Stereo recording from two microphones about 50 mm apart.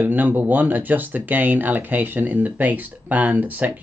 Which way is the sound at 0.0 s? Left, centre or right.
Right.